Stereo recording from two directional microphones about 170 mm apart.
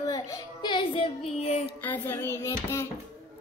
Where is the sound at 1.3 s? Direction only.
40° left (ahead or behind).